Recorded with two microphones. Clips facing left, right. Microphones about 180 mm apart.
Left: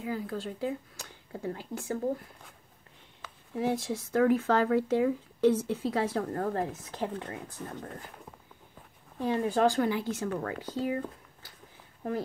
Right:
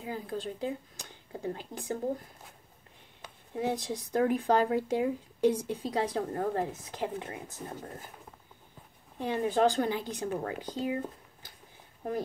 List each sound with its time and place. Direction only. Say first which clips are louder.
0.0 s speech: left 2 dB; 20° right (ahead or behind)
3.2 s speech: left 1 dB; 20° right (ahead or behind)
9.2 s a woman's voice: left 1 dB; 20° right (ahead or behind)